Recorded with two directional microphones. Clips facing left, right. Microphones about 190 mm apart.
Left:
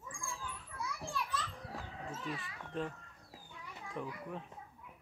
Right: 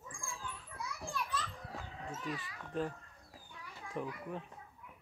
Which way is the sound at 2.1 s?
30° left (ahead or behind).